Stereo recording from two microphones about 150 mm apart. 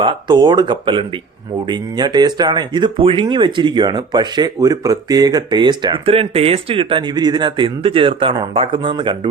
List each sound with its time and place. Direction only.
0.0 s speech: 30° right (ahead or behind)